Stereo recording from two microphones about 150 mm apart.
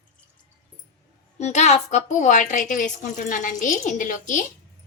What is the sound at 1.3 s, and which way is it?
A woman's voice, 50° left (ahead or behind).